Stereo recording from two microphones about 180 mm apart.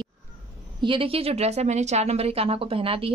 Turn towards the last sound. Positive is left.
turn(degrees=-30)  # may be behind; listen again after turning